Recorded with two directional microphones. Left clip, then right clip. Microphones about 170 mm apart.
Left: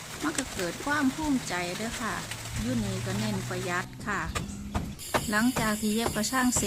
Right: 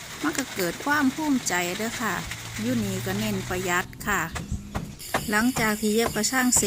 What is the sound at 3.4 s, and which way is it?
Speech, 30° right (ahead or behind).